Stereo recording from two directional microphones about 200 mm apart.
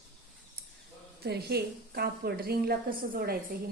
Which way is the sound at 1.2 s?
55° right (ahead or behind).